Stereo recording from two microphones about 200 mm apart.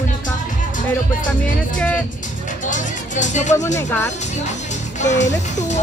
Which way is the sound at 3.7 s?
10° left (ahead or behind).